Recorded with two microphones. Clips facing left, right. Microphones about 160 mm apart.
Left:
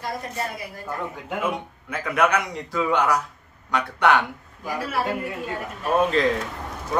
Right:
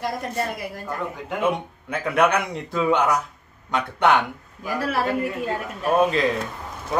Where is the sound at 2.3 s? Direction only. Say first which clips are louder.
Right 1 dB; 25° right (ahead or behind).